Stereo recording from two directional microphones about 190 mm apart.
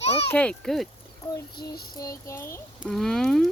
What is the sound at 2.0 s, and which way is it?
Child singing, 15° left (ahead or behind).